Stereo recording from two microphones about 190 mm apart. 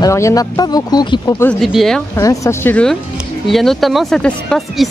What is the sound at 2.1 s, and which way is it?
Speech, 15° left (ahead or behind).